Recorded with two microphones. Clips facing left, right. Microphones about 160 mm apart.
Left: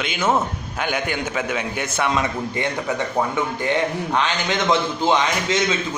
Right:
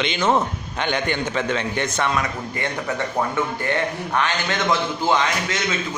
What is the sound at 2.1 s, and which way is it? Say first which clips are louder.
A man's voice: left 2 dB; 20° left (ahead or behind).